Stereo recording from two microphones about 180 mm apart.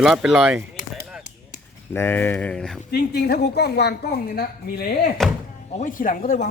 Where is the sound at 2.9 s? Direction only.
65° left (ahead or behind).